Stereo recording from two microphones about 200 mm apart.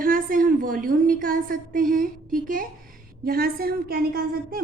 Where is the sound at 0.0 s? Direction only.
45° right (ahead or behind).